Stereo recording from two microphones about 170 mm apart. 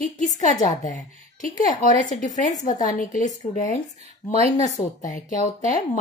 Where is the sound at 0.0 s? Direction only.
45° left (ahead or behind).